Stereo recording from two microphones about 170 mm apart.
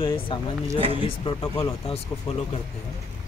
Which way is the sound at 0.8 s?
35° right (ahead or behind).